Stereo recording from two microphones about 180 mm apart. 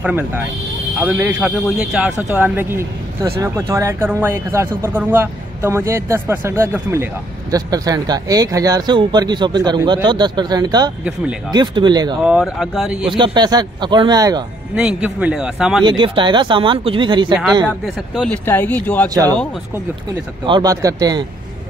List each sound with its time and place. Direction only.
0.0 s speech: 10° right (ahead or behind)
12.2 s a man's voice: centre (ahead or behind)
13.1 s speech: 25° right (ahead or behind)
14.8 s a man's voice: 5° right (ahead or behind)
15.8 s speech: 25° right (ahead or behind)
17.6 s speech: centre (ahead or behind)
19.0 s speech: 20° right (ahead or behind)
20.4 s speech: 25° right (ahead or behind)